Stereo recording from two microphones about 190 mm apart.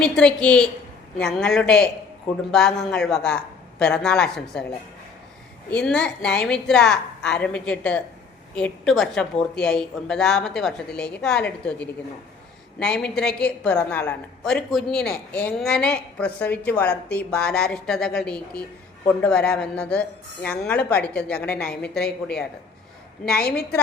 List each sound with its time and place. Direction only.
0.0 s a woman's voice: 5° left (ahead or behind)
5.7 s a woman's voice: 5° left (ahead or behind)